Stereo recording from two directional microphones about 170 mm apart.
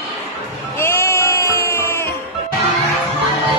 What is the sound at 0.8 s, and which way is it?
Music, 15° left (ahead or behind).